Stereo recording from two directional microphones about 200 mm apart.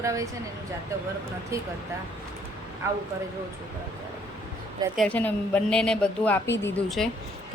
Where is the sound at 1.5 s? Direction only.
15° right (ahead or behind).